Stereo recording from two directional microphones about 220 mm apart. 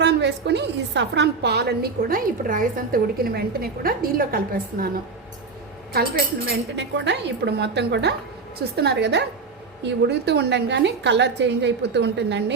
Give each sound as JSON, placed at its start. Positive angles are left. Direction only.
{"t": 0.0, "sound": "a woman's voice", "side_deg": -50}
{"t": 6.5, "sound": "a woman's voice", "side_deg": -50}